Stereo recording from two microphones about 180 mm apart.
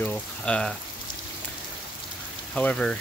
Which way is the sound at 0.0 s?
10° left (ahead or behind).